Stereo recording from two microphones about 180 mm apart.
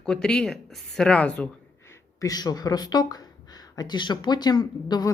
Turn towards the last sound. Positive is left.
turn(degrees=20)  # may be behind; listen again after turning